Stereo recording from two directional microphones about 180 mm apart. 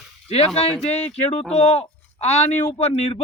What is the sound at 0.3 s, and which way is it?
Speech, 35° left (ahead or behind).